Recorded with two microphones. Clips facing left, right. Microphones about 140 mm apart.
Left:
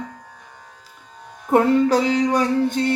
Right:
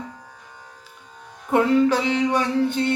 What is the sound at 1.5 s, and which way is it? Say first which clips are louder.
Speech: left 2 dB; 40° left (ahead or behind).